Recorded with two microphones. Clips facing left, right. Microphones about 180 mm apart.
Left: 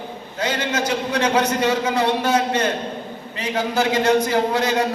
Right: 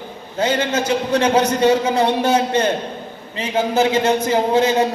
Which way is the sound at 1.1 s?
30° right (ahead or behind).